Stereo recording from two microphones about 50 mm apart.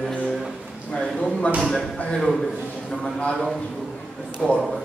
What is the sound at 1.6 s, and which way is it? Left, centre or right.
A man's voice, centre.